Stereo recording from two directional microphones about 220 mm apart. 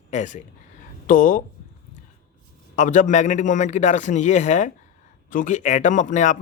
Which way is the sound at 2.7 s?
35° left (ahead or behind).